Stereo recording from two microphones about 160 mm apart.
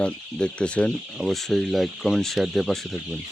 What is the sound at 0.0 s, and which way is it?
Speech, 5° left (ahead or behind).